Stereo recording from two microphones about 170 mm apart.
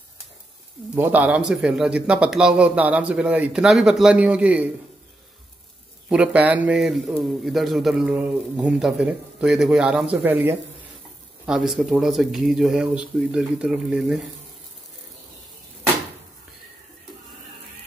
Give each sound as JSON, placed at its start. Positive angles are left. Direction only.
{"t": 0.9, "sound": "speech", "side_deg": -10}
{"t": 6.0, "sound": "a man's voice", "side_deg": -5}